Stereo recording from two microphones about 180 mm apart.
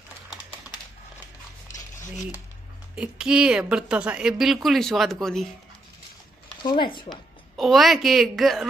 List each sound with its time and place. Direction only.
3.0 s a woman's voice: 5° right (ahead or behind)
6.6 s speech: 25° left (ahead or behind)
7.5 s a woman's voice: centre (ahead or behind)